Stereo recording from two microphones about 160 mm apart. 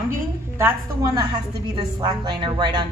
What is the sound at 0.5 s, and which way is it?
Speech, 20° right (ahead or behind).